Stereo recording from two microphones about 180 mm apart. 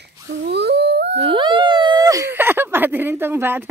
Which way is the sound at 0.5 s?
65° right (ahead or behind).